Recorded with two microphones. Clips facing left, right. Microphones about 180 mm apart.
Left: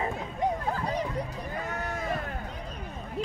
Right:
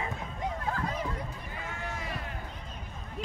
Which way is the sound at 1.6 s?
40° left (ahead or behind).